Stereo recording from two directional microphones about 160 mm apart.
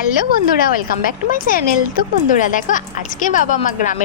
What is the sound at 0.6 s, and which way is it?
A woman's voice, 65° left (ahead or behind).